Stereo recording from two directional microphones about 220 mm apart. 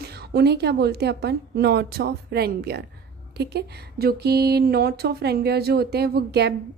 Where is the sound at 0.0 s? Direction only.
45° right (ahead or behind).